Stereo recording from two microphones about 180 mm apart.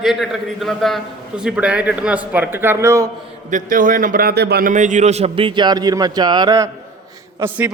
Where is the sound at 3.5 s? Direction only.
45° right (ahead or behind); by 4.7 s 65° right (ahead or behind).